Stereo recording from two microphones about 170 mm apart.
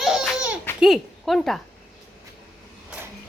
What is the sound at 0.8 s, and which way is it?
Speech, centre (ahead or behind).